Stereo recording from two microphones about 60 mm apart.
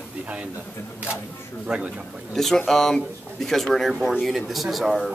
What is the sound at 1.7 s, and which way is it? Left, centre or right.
Speech, centre.